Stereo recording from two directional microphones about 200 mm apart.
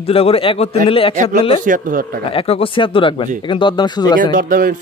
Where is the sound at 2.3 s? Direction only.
30° left (ahead or behind).